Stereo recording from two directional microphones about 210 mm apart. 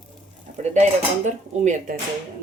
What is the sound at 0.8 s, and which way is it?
Dishes, 35° right (ahead or behind).